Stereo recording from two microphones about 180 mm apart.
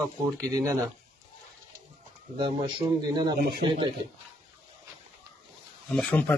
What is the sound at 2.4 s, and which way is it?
A man's voice, 25° right (ahead or behind).